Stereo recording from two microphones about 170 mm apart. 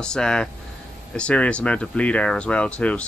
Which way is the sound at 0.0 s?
5° left (ahead or behind).